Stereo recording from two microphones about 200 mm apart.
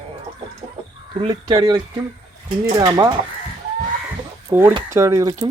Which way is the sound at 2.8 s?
20° right (ahead or behind).